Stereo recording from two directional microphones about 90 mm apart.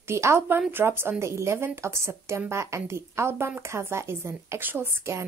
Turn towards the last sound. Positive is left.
turn(degrees=-30)  # may be behind; listen again after turning